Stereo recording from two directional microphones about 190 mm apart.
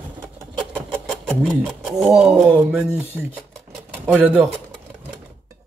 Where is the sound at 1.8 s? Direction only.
Centre (ahead or behind).